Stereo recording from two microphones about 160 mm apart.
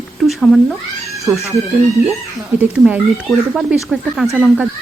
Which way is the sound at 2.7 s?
5° right (ahead or behind).